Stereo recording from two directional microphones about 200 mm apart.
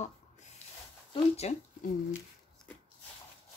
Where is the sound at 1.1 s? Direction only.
30° left (ahead or behind).